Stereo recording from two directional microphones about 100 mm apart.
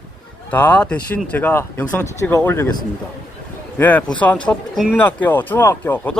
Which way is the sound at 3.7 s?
15° left (ahead or behind).